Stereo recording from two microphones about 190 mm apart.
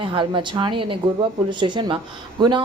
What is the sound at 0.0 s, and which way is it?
A woman's voice, 25° right (ahead or behind).